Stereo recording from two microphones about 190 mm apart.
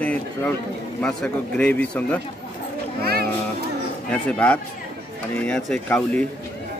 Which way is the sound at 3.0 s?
55° right (ahead or behind).